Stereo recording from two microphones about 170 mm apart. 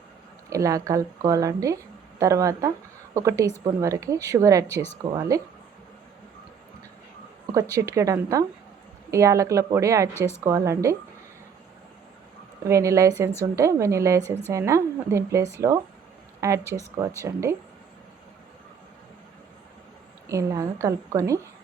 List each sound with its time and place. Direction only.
0.5 s speech: 20° right (ahead or behind)
7.5 s a woman's voice: 20° right (ahead or behind)
12.6 s a woman's voice: 15° right (ahead or behind)
20.2 s speech: 20° right (ahead or behind)